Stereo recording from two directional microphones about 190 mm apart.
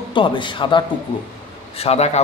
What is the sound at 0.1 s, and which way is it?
A man's voice, 25° left (ahead or behind).